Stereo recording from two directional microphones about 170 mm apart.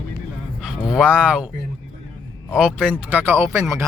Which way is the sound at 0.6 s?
5° right (ahead or behind).